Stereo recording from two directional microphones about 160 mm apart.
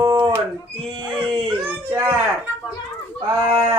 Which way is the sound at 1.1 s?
30° right (ahead or behind).